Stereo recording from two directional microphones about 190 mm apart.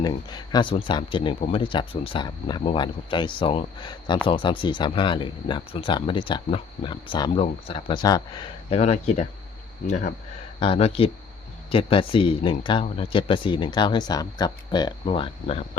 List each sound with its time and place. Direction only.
0.0 s speech: 20° left (ahead or behind)
8.7 s speech: 35° left (ahead or behind)
10.6 s speech: 30° left (ahead or behind)